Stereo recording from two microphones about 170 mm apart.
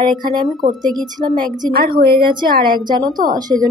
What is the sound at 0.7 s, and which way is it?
A woman's voice, 25° right (ahead or behind).